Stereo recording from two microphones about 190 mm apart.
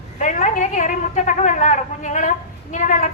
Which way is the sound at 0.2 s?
40° left (ahead or behind).